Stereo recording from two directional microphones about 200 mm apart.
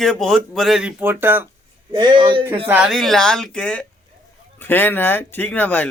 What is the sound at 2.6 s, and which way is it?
Speech, 5° right (ahead or behind).